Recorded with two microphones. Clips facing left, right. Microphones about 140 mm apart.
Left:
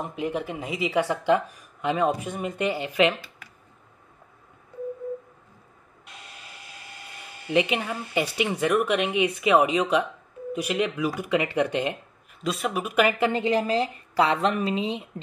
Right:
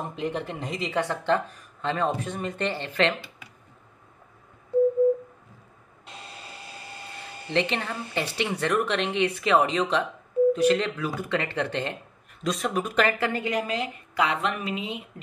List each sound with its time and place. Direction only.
0.0 s speech: 5° left (ahead or behind)
6.0 s a sound: 30° right (ahead or behind)
7.5 s speech: 10° left (ahead or behind)
13.3 s a woman's voice: 25° left (ahead or behind)